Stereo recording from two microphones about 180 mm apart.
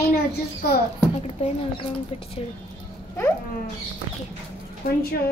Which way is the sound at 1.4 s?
35° left (ahead or behind).